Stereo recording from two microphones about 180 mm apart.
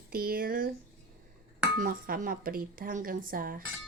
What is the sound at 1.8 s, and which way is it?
Speech, 50° right (ahead or behind).